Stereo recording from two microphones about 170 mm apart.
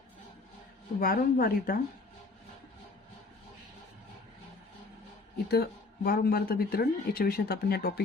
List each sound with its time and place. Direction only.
0.9 s speech: 60° left (ahead or behind)
5.5 s speech: 70° left (ahead or behind)